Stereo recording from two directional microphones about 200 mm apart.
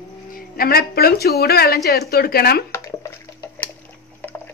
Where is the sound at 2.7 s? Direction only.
15° left (ahead or behind).